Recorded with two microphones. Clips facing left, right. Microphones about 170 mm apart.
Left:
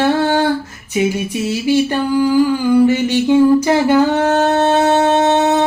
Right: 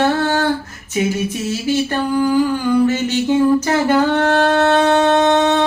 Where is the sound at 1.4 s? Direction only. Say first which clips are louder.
Left 5 dB; 15° left (ahead or behind).